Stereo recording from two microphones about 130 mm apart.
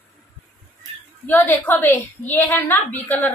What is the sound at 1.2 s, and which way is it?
A woman's voice, 15° left (ahead or behind).